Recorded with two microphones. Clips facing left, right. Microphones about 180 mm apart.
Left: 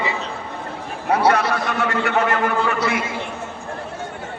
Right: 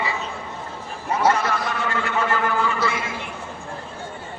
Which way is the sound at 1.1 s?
65° left (ahead or behind).